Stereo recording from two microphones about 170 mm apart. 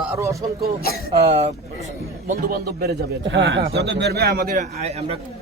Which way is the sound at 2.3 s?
60° right (ahead or behind).